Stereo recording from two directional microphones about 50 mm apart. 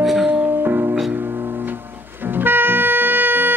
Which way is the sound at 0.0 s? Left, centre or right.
Centre.